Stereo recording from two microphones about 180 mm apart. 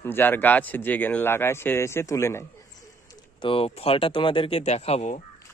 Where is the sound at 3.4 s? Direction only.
30° left (ahead or behind).